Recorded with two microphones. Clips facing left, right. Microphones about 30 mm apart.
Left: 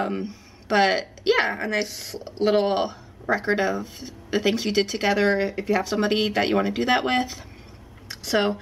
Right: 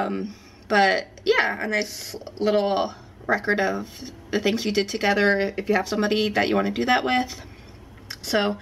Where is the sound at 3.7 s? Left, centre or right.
Centre.